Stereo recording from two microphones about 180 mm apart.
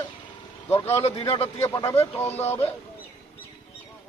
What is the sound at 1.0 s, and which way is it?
Speech, 35° left (ahead or behind).